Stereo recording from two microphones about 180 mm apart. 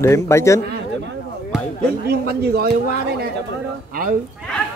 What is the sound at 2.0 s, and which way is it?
Speech, 60° right (ahead or behind).